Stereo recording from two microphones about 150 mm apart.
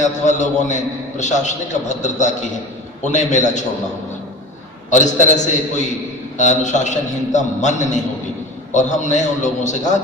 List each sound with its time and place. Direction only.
0.0 s a man's voice: 50° left (ahead or behind)
4.8 s a man's voice: 55° left (ahead or behind)